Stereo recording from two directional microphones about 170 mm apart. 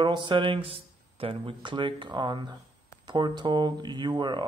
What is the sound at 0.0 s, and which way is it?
Speech, 25° right (ahead or behind).